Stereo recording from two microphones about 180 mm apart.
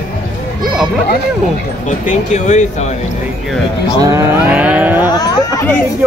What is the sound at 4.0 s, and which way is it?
Speech, 15° right (ahead or behind).